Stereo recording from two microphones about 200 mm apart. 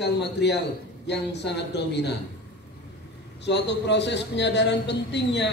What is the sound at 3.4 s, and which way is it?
A man's voice, 60° left (ahead or behind).